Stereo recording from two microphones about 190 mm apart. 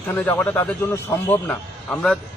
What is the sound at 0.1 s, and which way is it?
A man's voice, 10° left (ahead or behind).